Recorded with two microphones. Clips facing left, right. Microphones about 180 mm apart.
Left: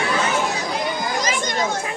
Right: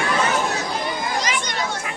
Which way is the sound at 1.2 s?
45° left (ahead or behind).